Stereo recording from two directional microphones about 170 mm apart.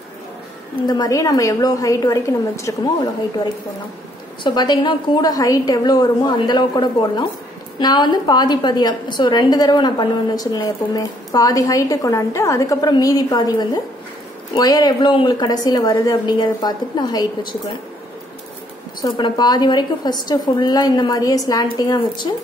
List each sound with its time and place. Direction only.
0.8 s a woman's voice: 25° left (ahead or behind)
4.4 s a woman's voice: 25° left (ahead or behind)
18.9 s a woman's voice: 25° left (ahead or behind)